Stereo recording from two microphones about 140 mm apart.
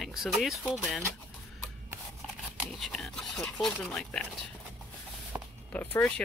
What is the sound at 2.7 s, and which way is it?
Speech, centre (ahead or behind).